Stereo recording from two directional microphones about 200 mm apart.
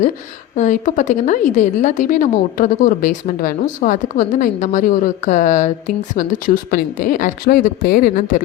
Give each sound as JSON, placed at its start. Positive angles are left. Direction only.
{"t": 0.5, "sound": "a woman's voice", "side_deg": 35}